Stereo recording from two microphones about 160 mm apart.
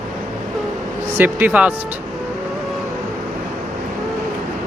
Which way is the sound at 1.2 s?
10° right (ahead or behind).